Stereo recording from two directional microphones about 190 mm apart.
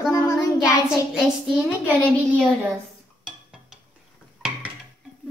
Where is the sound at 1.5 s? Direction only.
5° right (ahead or behind).